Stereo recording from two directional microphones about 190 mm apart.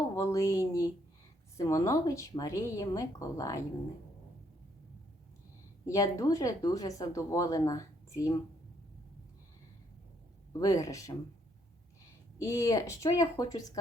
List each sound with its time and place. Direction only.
0.2 s speech: 15° left (ahead or behind)
5.8 s speech: 15° left (ahead or behind)
10.6 s speech: 15° left (ahead or behind)
12.4 s speech: 15° left (ahead or behind)